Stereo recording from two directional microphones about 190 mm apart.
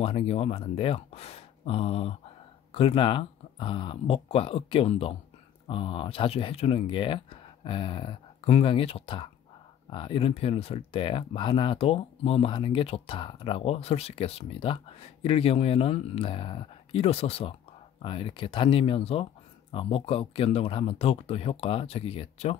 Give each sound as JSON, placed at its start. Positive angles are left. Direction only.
{"t": 0.0, "sound": "speech", "side_deg": 30}